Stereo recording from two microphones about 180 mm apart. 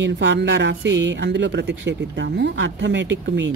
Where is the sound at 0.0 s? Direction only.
85° right.